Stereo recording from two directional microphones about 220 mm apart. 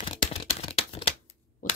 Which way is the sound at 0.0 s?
25° left (ahead or behind).